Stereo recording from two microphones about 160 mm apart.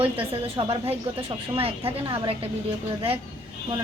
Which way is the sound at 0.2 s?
35° right (ahead or behind).